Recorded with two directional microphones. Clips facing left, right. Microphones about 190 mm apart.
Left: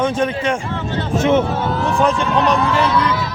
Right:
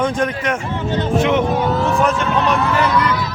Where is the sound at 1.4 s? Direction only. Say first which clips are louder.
Right 2 dB; 15° right (ahead or behind).